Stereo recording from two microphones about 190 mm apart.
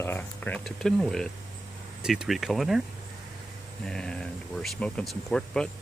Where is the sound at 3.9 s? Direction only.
5° left (ahead or behind).